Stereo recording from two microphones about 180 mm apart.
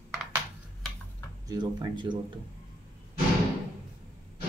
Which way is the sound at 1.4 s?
25° right (ahead or behind).